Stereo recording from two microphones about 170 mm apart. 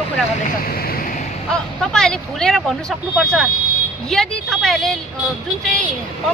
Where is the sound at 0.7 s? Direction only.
60° left (ahead or behind).